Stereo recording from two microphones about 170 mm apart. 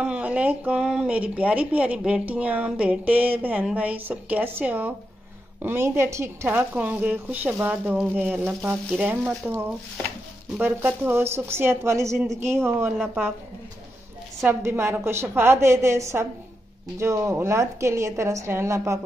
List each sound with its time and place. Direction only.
0.0 s speech: 5° right (ahead or behind)
12.9 s a woman's voice: centre (ahead or behind)
14.4 s speech: 15° right (ahead or behind)